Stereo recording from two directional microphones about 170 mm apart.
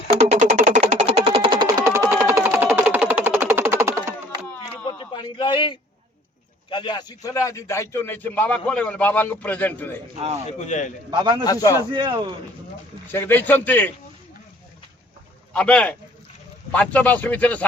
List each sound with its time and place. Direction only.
0.2 s music: 40° right (ahead or behind); by 3.8 s 15° right (ahead or behind)
4.9 s a sound: 25° left (ahead or behind)
6.7 s a man's voice: 25° left (ahead or behind); by 10.0 s 10° left (ahead or behind)
10.6 s a man's voice: 45° left (ahead or behind)
11.1 s speech: 25° right (ahead or behind)
11.4 s a man's voice: 20° left (ahead or behind)
11.9 s speech: 25° right (ahead or behind)
13.1 s a man's voice: 10° left (ahead or behind)
15.5 s a man's voice: 5° left (ahead or behind)